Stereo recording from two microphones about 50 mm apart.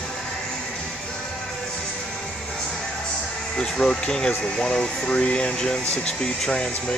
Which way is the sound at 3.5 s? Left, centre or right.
Centre.